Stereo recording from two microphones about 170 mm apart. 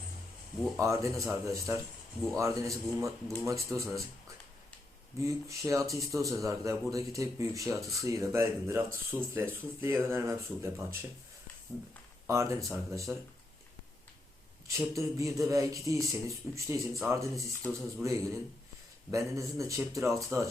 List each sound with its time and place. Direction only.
0.8 s speech: 20° right (ahead or behind)
5.2 s speech: 20° right (ahead or behind)
12.3 s speech: 15° right (ahead or behind)
14.7 s speech: 20° right (ahead or behind)